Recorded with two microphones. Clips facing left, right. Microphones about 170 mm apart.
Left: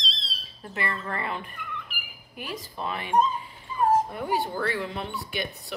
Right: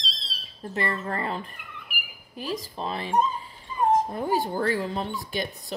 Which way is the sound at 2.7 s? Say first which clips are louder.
Left 2 dB; 35° right (ahead or behind).